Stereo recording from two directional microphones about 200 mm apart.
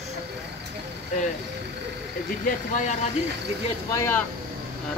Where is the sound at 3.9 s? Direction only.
10° left (ahead or behind).